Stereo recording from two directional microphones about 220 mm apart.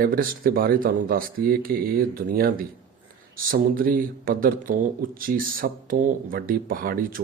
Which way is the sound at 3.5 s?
40° right (ahead or behind).